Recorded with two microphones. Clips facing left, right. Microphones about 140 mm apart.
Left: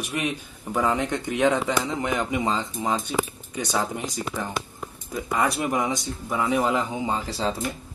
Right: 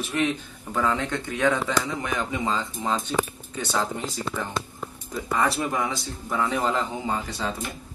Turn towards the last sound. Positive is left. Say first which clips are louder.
# left 3 dB
turn(degrees=30)  # may be behind; listen again after turning